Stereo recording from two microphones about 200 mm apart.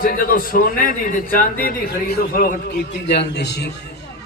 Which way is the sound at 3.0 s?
55° left (ahead or behind).